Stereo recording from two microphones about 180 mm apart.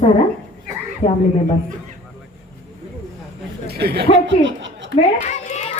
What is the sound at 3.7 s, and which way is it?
Speech, 60° right (ahead or behind).